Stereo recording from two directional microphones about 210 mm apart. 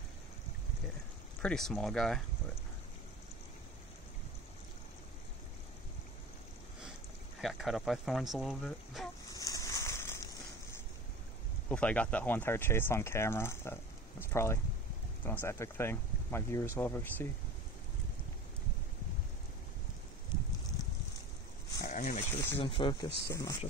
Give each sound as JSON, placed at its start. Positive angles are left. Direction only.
{"t": 1.4, "sound": "speech", "side_deg": 0}
{"t": 7.4, "sound": "speech", "side_deg": 0}
{"t": 9.3, "sound": "a sound", "side_deg": 15}
{"t": 11.7, "sound": "speech", "side_deg": 5}
{"t": 21.8, "sound": "a sound", "side_deg": 35}
{"t": 22.2, "sound": "speech", "side_deg": 10}
{"t": 22.6, "sound": "speech", "side_deg": 25}